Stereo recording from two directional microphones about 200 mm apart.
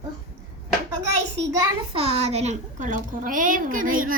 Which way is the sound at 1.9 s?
30° right (ahead or behind).